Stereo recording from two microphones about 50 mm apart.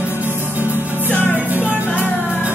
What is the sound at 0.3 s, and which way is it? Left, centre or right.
Music, right.